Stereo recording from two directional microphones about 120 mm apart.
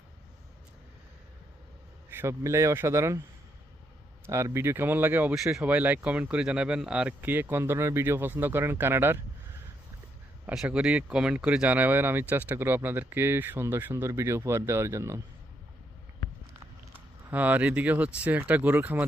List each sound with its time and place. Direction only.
2.0 s a man's voice: 20° right (ahead or behind)
4.3 s speech: 25° right (ahead or behind)
5.3 s speech: 5° right (ahead or behind); by 9.2 s 20° right (ahead or behind)
10.4 s speech: 10° right (ahead or behind); by 15.2 s 25° right (ahead or behind)
17.3 s speech: 15° right (ahead or behind)